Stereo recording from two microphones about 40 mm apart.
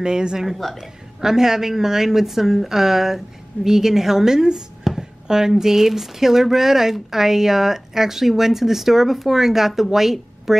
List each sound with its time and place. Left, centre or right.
0.0 s a woman's voice: centre
4.9 s a sound: centre
5.5 s speech: centre